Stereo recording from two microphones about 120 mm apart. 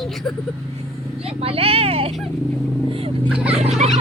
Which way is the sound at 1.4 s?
55° right (ahead or behind).